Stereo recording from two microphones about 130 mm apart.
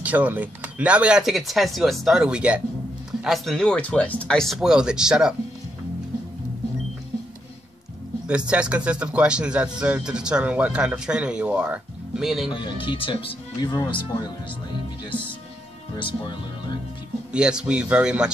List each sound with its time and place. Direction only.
0.0 s speech: 10° right (ahead or behind)
8.3 s speech: 10° right (ahead or behind)
12.4 s speech: 40° left (ahead or behind)
13.6 s speech: 30° left (ahead or behind)
17.3 s speech: 5° right (ahead or behind)